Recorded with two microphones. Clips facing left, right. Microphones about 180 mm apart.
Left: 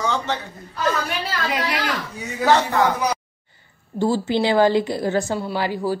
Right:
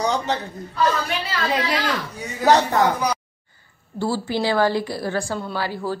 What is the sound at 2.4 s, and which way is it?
Speech, 40° right (ahead or behind).